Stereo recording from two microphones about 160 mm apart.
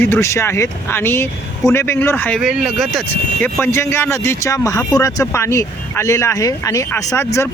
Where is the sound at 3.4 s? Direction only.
15° left (ahead or behind).